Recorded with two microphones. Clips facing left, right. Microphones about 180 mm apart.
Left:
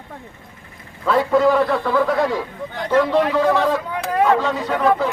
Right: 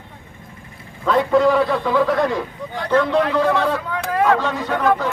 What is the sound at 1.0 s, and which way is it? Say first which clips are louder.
Speech: even; 5° left (ahead or behind).